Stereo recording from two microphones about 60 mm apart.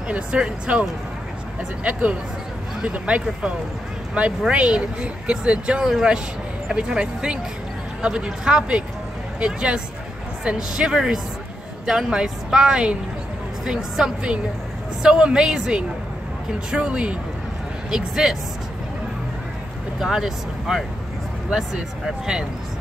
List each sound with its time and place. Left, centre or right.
0.1 s speech: centre
20.0 s speech: centre